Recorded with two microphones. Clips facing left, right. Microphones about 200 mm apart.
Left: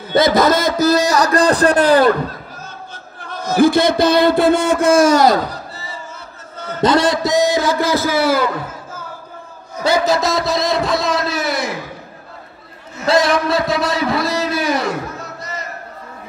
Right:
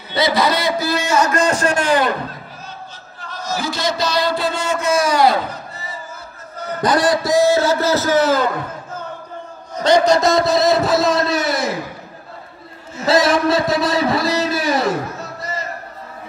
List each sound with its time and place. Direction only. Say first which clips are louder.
0.1 s a man's voice: left 4 dB; 45° left (ahead or behind)
2.9 s a man's voice: left 3 dB; 55° left (ahead or behind); by 8.5 s 10° left (ahead or behind)
9.8 s a man's voice: right 2 dB; 5° left (ahead or behind)
13.0 s a man's voice: even; centre (ahead or behind)